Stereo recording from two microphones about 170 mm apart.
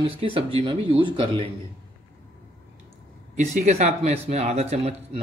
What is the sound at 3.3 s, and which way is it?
Speech, 45° right (ahead or behind).